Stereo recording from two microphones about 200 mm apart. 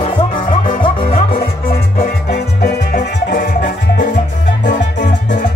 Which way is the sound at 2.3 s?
50° left (ahead or behind).